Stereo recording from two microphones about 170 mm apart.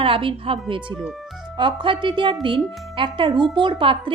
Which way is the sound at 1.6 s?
30° right (ahead or behind).